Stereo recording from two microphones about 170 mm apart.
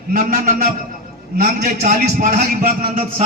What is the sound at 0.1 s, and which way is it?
A man's voice, 50° right (ahead or behind).